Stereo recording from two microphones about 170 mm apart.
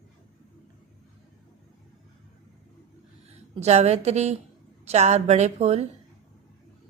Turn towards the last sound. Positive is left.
turn(degrees=-40)  # may be behind; listen again after turning